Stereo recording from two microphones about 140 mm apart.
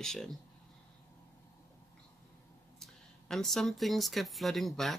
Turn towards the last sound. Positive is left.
turn(degrees=0)  # may be behind; listen again after turning